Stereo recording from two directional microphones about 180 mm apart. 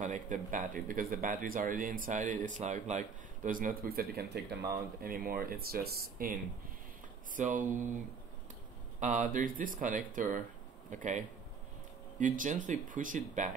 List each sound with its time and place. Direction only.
0.0 s speech: 45° right (ahead or behind)
7.3 s speech: 45° right (ahead or behind)
9.0 s speech: 45° right (ahead or behind)